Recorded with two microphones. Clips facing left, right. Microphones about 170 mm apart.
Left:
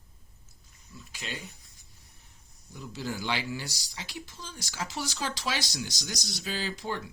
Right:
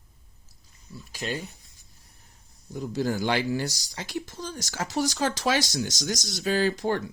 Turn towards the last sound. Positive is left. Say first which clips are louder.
# right 9 dB
turn(degrees=-50)  # may be behind; listen again after turning